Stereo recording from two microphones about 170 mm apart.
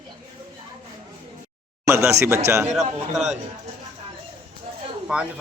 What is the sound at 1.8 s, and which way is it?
Speech, 15° right (ahead or behind).